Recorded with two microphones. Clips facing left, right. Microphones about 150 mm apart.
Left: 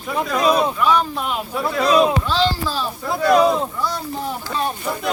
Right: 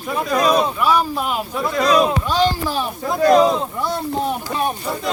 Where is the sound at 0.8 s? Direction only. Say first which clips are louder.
Right 1 dB; 10° right (ahead or behind).